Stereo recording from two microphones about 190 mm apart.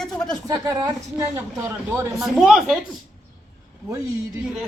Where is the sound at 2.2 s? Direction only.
Centre (ahead or behind).